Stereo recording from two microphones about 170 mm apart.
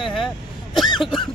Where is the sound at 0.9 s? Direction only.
30° left (ahead or behind).